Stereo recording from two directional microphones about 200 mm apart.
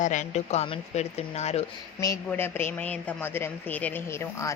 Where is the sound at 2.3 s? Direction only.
10° left (ahead or behind).